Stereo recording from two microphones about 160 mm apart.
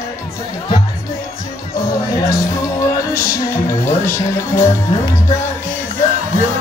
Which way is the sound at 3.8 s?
15° left (ahead or behind).